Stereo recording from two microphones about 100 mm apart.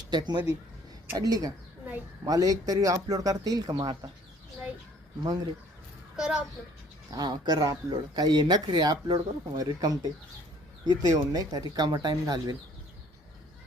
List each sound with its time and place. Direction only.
0.1 s speech: 45° right (ahead or behind)
6.1 s a child's voice: 5° right (ahead or behind)
7.1 s speech: 45° right (ahead or behind)